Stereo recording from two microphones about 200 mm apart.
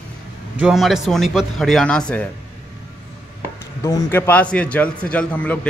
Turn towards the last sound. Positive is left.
turn(degrees=5)  # may be behind; listen again after turning